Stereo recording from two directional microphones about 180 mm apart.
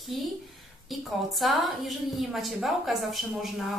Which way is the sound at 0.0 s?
Centre (ahead or behind).